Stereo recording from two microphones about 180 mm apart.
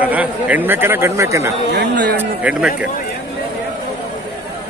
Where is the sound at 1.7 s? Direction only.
60° right (ahead or behind).